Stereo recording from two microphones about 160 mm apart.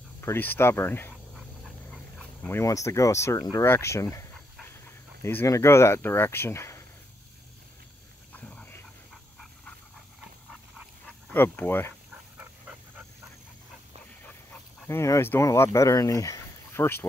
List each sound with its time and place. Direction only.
0.2 s speech: 15° left (ahead or behind)
2.4 s speech: 15° left (ahead or behind)
3.5 s dog: 15° left (ahead or behind)
5.2 s speech: 15° left (ahead or behind)
8.3 s a sound: 10° left (ahead or behind)
10.5 s dog: centre (ahead or behind)
11.3 s speech: 15° left (ahead or behind)
14.9 s speech: 15° left (ahead or behind)